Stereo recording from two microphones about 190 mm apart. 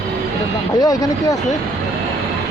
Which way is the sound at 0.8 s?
20° left (ahead or behind).